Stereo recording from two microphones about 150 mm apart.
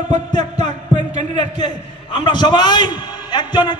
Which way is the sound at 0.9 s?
50° right (ahead or behind).